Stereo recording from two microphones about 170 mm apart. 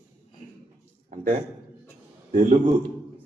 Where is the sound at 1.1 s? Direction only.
50° right (ahead or behind).